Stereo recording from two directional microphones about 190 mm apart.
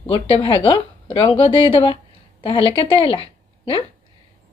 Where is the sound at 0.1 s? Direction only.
25° left (ahead or behind).